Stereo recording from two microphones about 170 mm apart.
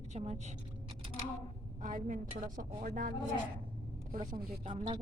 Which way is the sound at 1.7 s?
50° right (ahead or behind).